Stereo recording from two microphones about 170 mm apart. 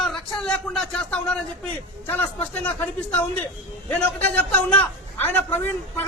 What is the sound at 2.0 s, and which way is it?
A man's voice, 10° left (ahead or behind).